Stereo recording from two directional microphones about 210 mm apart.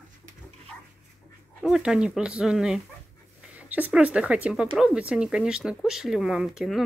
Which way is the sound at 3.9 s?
5° right (ahead or behind).